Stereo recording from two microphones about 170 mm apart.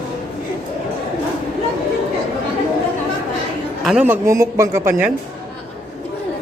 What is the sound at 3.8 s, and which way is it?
Speech, 5° right (ahead or behind).